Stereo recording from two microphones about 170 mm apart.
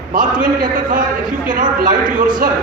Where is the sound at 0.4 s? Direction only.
50° right (ahead or behind).